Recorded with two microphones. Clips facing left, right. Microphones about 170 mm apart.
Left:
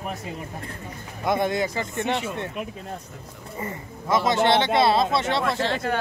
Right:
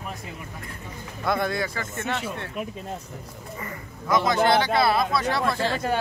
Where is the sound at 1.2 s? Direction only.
20° left (ahead or behind).